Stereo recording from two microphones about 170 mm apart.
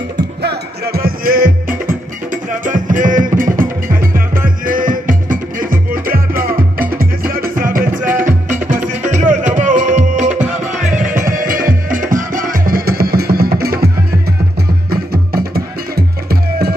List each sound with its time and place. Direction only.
0.4 s music: 70° right (ahead or behind)
14.9 s music: 65° right (ahead or behind)